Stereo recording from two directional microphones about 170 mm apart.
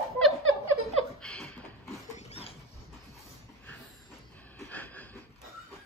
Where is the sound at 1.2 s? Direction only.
5° left (ahead or behind).